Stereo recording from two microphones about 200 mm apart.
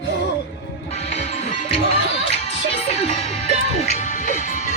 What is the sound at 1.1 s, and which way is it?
Music, 30° left (ahead or behind).